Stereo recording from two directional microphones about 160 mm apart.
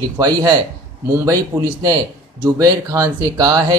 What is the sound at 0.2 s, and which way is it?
Speech, 25° right (ahead or behind).